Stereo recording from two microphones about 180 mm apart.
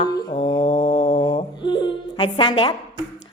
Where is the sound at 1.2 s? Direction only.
25° left (ahead or behind).